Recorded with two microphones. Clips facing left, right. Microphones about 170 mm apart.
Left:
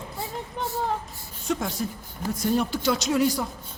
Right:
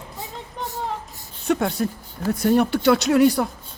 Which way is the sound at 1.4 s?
65° right (ahead or behind).